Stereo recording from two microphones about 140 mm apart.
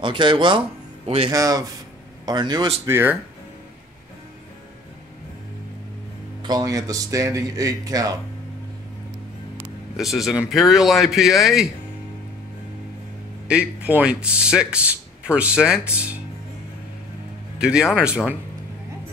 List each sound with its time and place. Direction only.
0.0 s speech: 35° right (ahead or behind)
1.0 s speech: 45° right (ahead or behind)
1.3 s speech: 25° right (ahead or behind)
2.9 s speech: 15° right (ahead or behind)
6.4 s speech: 25° right (ahead or behind)
9.9 s speech: centre (ahead or behind)
13.5 s speech: 10° right (ahead or behind)
17.6 s speech: 5° right (ahead or behind)